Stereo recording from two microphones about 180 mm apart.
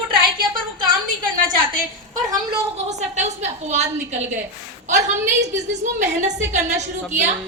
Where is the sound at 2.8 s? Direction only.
40° right (ahead or behind).